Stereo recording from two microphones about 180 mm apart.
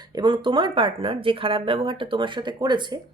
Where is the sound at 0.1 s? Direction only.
25° right (ahead or behind).